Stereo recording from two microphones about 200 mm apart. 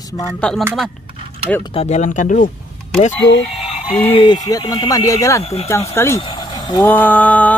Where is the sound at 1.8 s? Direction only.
35° left (ahead or behind).